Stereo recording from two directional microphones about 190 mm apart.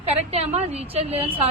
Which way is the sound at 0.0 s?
35° right (ahead or behind).